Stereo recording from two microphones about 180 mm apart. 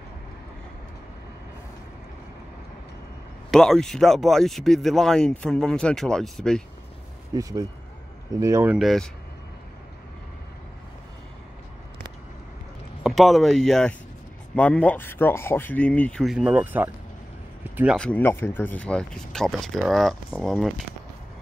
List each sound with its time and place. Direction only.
3.5 s speech: centre (ahead or behind)
7.3 s speech: 20° right (ahead or behind)
8.7 s speech: centre (ahead or behind)
13.0 s speech: centre (ahead or behind)
17.9 s speech: 5° left (ahead or behind)